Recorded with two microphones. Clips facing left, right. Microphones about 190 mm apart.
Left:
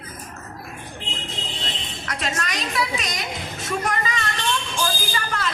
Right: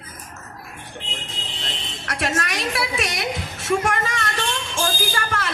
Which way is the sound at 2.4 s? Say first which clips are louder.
Right 1 dB; 75° right (ahead or behind).